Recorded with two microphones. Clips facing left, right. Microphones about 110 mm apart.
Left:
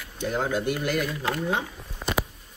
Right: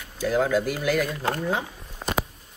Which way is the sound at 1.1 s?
45° right (ahead or behind).